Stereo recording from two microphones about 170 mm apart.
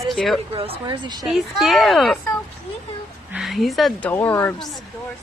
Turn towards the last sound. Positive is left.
turn(degrees=15)  # may be behind; listen again after turning